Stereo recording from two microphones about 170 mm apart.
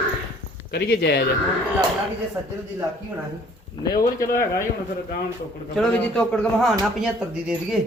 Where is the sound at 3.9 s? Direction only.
55° left (ahead or behind).